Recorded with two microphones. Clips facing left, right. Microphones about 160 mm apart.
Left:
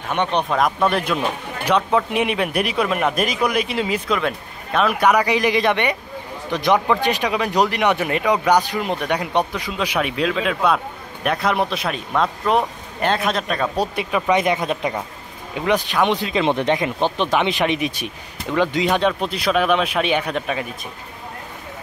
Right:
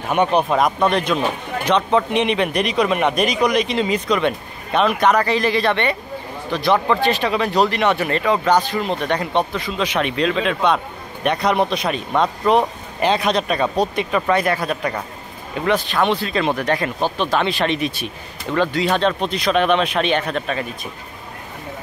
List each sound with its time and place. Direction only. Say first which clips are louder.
0.1 s speech: right 4 dB; 10° right (ahead or behind); by 14.4 s 10° left (ahead or behind)
14.4 s speech: even; 20° left (ahead or behind)